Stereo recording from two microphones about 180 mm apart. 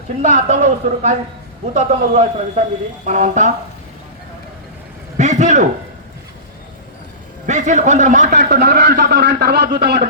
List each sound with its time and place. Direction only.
0.2 s a man's voice: 45° right (ahead or behind)
5.1 s a sound: 40° right (ahead or behind)
7.4 s a man's voice: 40° right (ahead or behind)
8.4 s a man's voice: 60° right (ahead or behind)